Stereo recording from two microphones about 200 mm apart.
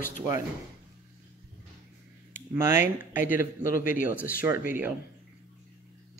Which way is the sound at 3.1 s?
40° left (ahead or behind).